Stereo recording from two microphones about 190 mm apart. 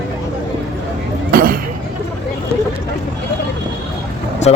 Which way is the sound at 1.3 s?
50° right (ahead or behind).